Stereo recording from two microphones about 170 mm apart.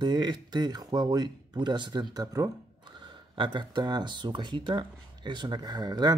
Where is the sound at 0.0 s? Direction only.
25° right (ahead or behind).